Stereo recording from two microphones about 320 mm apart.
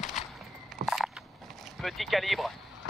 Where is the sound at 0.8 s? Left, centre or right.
Right.